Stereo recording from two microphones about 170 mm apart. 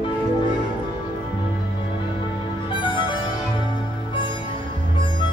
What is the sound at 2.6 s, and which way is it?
Music, 30° left (ahead or behind).